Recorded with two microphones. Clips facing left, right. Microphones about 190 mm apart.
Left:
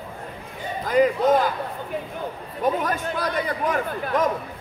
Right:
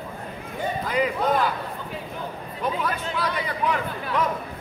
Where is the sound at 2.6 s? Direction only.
45° left (ahead or behind).